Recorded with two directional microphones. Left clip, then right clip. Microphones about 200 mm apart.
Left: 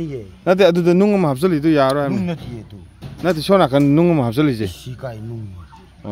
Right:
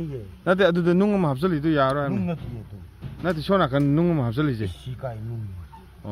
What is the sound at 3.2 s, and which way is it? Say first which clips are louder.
Speech: left 8 dB; 20° left (ahead or behind).